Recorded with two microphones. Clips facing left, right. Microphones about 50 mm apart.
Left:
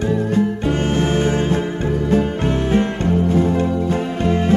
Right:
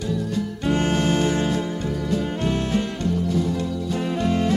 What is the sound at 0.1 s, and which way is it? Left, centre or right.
Music, left.